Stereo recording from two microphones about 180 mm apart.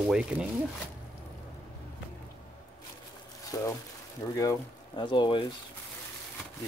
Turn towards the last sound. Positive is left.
turn(degrees=30)  # may be behind; listen again after turning